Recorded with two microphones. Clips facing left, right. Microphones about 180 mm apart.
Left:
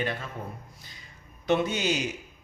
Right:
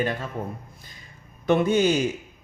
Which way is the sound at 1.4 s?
55° right (ahead or behind).